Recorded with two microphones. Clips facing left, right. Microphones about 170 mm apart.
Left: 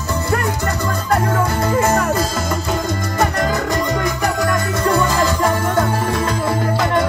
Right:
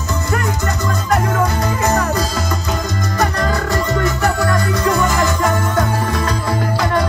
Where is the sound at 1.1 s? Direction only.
30° left (ahead or behind).